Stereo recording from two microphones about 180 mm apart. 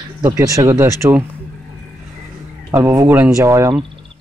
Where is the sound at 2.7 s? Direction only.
15° right (ahead or behind).